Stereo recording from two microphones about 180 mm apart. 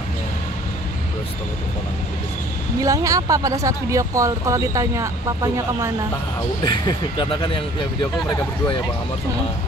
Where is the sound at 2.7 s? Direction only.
20° right (ahead or behind).